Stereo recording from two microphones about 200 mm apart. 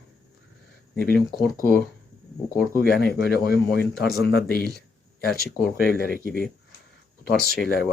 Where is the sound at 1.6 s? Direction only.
45° left (ahead or behind).